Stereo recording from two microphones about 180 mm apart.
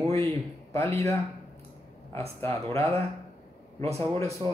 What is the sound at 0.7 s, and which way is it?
Speech, 15° left (ahead or behind).